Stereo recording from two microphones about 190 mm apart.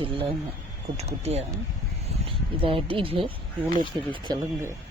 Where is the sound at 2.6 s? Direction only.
25° right (ahead or behind).